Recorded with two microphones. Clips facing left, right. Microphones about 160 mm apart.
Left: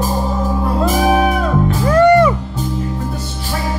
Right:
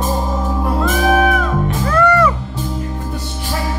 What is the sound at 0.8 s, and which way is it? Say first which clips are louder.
Music: even; 35° left (ahead or behind).